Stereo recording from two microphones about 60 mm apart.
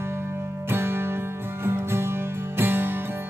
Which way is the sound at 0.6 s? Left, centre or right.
Right.